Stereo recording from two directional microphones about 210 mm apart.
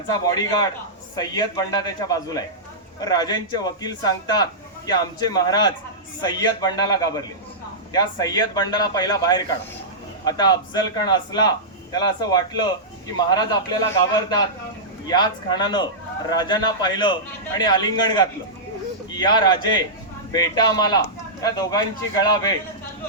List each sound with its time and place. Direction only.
0.1 s a man's voice: 20° left (ahead or behind)